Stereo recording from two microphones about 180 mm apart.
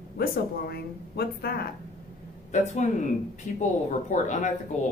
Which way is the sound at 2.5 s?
45° left (ahead or behind).